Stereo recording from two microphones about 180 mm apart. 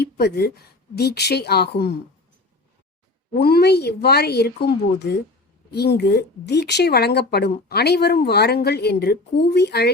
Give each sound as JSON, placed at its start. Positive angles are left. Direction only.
{"t": 0.0, "sound": "speech", "side_deg": 65}
{"t": 3.4, "sound": "speech", "side_deg": 60}